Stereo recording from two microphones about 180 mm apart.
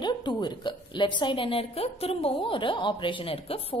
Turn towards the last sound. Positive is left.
turn(degrees=30)  # may be behind; listen again after turning